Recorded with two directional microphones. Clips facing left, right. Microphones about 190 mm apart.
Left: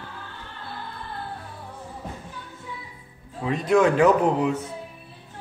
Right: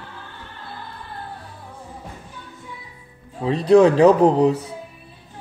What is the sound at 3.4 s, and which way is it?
A man's voice, 30° right (ahead or behind).